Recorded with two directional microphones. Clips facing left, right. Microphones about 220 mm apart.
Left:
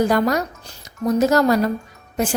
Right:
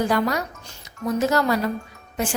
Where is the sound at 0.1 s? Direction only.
45° left (ahead or behind).